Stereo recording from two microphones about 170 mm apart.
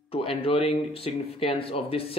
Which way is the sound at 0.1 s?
35° left (ahead or behind).